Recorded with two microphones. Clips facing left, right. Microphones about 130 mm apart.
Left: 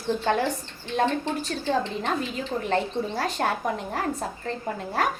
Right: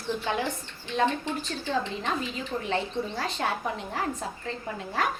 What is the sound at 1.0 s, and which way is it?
A woman's voice, 35° left (ahead or behind).